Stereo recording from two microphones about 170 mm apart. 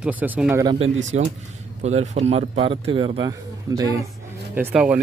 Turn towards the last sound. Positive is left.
turn(degrees=-5)  # may be behind; listen again after turning